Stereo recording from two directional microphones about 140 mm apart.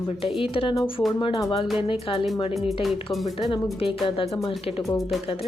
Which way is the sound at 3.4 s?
35° left (ahead or behind).